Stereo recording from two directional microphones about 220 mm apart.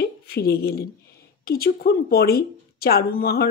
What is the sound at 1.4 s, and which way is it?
A woman's voice, 45° left (ahead or behind).